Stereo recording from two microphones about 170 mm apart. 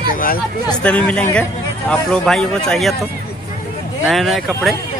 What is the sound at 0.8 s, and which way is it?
A man's voice, 5° left (ahead or behind).